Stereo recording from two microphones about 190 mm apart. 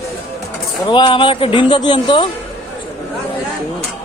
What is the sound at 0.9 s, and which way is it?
Speech, 25° left (ahead or behind).